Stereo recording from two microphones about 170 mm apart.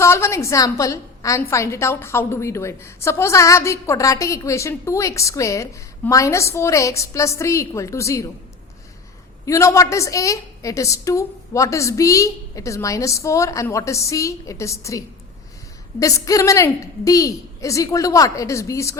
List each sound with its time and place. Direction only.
0.0 s a woman's voice: 15° left (ahead or behind)
9.5 s a woman's voice: 15° left (ahead or behind)